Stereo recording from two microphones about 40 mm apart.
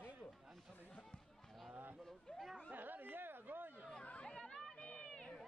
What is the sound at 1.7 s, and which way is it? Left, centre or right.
Speech, right.